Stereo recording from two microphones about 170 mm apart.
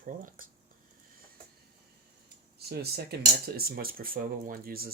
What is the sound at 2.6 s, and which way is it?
Speech, 65° right (ahead or behind).